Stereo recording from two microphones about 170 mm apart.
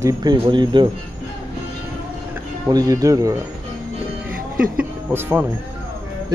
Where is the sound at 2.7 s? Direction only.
20° right (ahead or behind).